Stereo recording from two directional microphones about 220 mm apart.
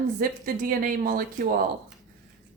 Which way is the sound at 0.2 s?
40° right (ahead or behind).